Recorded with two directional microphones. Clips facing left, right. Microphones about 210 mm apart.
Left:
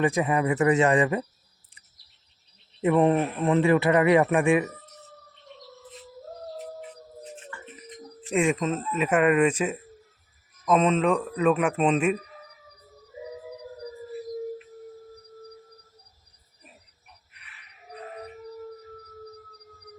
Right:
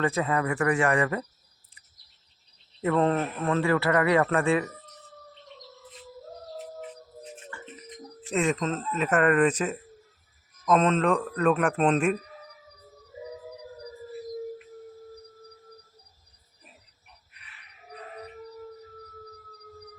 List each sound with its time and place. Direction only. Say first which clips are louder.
0.0 s speech: left 3 dB; 15° left (ahead or behind)
2.8 s speech: left 3 dB; 15° left (ahead or behind)
8.3 s speech: left 2 dB; 10° left (ahead or behind)